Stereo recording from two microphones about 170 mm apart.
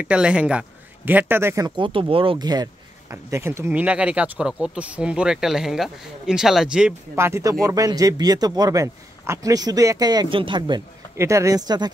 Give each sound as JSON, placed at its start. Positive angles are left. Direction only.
{"t": 0.0, "sound": "a man's voice", "side_deg": -5}
{"t": 1.8, "sound": "a man's voice", "side_deg": -30}
{"t": 11.1, "sound": "a man's voice", "side_deg": -15}